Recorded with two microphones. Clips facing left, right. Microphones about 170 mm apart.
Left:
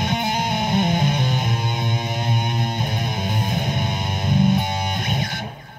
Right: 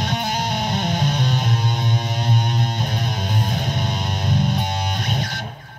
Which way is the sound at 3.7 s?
50° left (ahead or behind).